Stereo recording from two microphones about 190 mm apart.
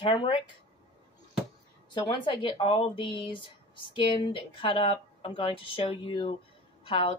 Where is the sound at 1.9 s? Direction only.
25° left (ahead or behind).